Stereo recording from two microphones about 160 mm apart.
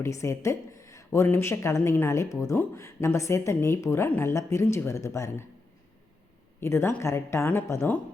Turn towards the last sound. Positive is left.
turn(degrees=15)  # may be behind; listen again after turning